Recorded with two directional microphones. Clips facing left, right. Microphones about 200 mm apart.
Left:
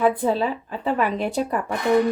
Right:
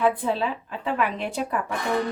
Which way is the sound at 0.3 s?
40° left (ahead or behind).